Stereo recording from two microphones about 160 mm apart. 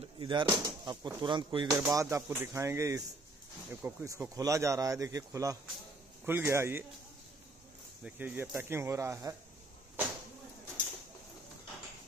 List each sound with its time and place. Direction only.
0.2 s speech: 30° right (ahead or behind)
1.8 s speech: 15° right (ahead or behind)
8.0 s speech: 10° right (ahead or behind)